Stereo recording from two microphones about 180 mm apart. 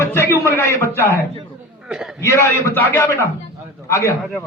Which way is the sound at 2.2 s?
15° left (ahead or behind).